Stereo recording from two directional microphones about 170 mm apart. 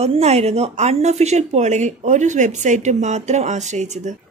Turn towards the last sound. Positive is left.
turn(degrees=-45)  # may be behind; listen again after turning